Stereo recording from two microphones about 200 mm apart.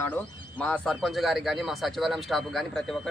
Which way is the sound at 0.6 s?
Centre (ahead or behind).